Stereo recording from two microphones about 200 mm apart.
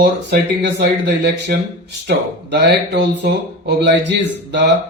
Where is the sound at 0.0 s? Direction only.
60° right (ahead or behind).